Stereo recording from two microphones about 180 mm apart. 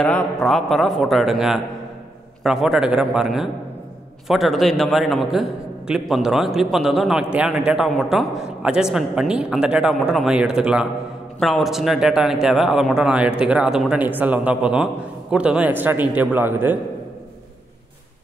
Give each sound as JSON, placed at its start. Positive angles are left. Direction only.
{"t": 0.0, "sound": "a man's voice", "side_deg": 5}